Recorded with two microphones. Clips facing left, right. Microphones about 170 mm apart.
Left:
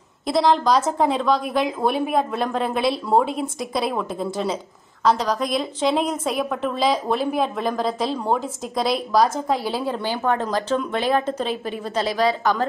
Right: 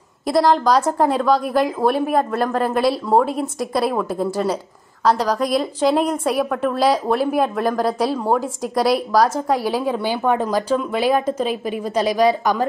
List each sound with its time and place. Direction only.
0.3 s a woman's voice: 5° right (ahead or behind)